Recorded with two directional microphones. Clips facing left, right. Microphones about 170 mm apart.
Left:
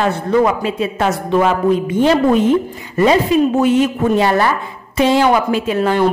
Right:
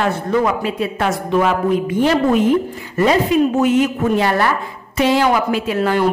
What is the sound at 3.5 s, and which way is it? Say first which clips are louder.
A woman's voice: left 1 dB; 30° left (ahead or behind).